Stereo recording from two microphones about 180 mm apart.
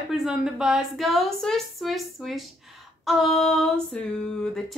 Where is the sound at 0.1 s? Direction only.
Centre (ahead or behind).